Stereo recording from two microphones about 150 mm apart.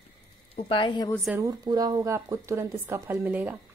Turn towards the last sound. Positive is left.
turn(degrees=-10)  # may be behind; listen again after turning